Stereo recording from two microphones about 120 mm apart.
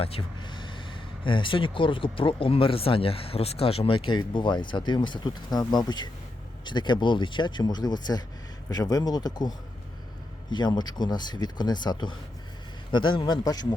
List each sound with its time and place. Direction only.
0.0 s speech: 50° left (ahead or behind); by 13.7 s 30° left (ahead or behind)